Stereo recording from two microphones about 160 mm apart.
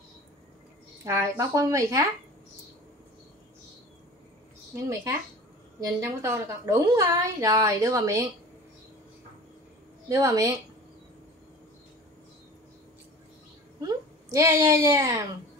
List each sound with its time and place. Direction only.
1.0 s a woman's voice: 15° right (ahead or behind)
4.7 s a woman's voice: 20° right (ahead or behind)
10.0 s a woman's voice: 20° right (ahead or behind)
13.7 s a woman's voice: 20° right (ahead or behind)